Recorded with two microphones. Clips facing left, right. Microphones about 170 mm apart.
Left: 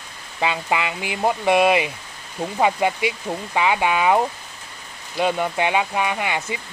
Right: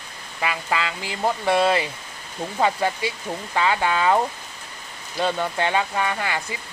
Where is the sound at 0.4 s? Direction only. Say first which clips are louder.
Left 3 dB; 20° left (ahead or behind).